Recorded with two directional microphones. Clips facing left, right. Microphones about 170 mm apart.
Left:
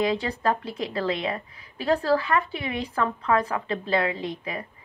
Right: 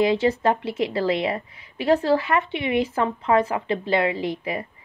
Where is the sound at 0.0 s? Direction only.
25° right (ahead or behind).